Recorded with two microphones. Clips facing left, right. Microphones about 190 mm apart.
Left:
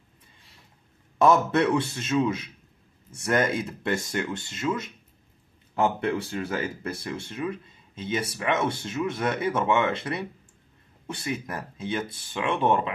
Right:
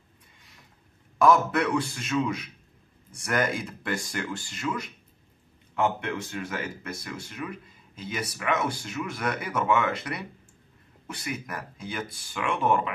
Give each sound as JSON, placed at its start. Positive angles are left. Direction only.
{"t": 1.1, "sound": "speech", "side_deg": 25}